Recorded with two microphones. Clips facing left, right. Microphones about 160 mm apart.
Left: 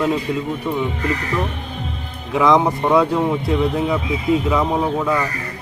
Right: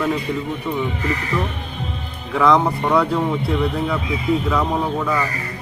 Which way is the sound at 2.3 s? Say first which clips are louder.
Left 1 dB; 15° left (ahead or behind).